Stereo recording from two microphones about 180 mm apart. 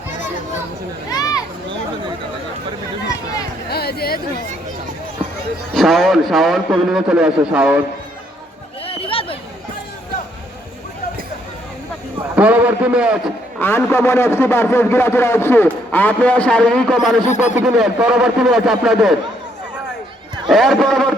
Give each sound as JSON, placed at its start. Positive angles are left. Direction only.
{"t": 1.1, "sound": "a sound", "side_deg": 20}
{"t": 3.7, "sound": "speech", "side_deg": 60}
{"t": 5.7, "sound": "a man's voice", "side_deg": 0}
{"t": 8.9, "sound": "a sound", "side_deg": 30}
{"t": 12.4, "sound": "a man's voice", "side_deg": -5}
{"t": 13.6, "sound": "a man's voice", "side_deg": 15}
{"t": 17.2, "sound": "speech", "side_deg": 40}
{"t": 17.7, "sound": "a man's voice", "side_deg": -5}
{"t": 20.5, "sound": "a man's voice", "side_deg": 0}